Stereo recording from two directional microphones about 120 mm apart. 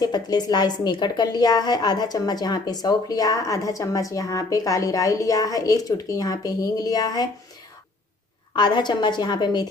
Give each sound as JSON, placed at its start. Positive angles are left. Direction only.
{"t": 0.0, "sound": "a woman's voice", "side_deg": 35}
{"t": 8.5, "sound": "a woman's voice", "side_deg": 40}